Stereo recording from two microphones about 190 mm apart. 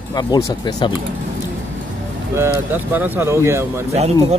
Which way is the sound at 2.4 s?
10° right (ahead or behind).